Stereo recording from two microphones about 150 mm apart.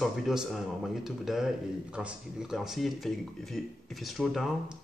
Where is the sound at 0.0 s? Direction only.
Centre (ahead or behind).